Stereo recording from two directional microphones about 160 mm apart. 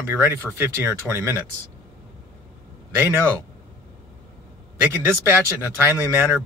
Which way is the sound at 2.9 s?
15° right (ahead or behind).